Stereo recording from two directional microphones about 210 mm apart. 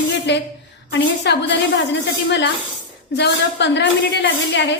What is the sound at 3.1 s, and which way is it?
A woman's voice, 55° left (ahead or behind).